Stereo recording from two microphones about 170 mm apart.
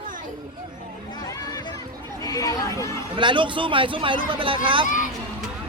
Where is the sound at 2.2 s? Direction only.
20° left (ahead or behind).